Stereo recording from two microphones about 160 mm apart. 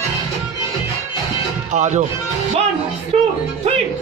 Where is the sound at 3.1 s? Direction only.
40° right (ahead or behind).